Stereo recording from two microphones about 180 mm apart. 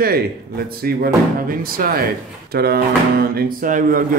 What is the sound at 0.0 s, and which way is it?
Speech, 60° right (ahead or behind).